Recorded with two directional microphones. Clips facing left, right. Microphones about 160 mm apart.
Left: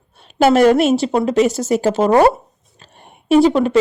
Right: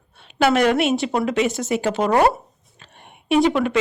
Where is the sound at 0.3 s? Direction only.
40° left (ahead or behind).